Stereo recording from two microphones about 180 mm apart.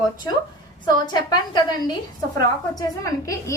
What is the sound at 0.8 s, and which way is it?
A woman's voice, 25° left (ahead or behind).